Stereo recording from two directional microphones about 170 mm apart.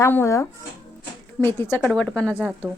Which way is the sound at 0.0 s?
15° left (ahead or behind).